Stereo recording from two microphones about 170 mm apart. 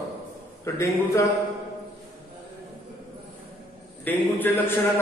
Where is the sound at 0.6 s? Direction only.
15° left (ahead or behind).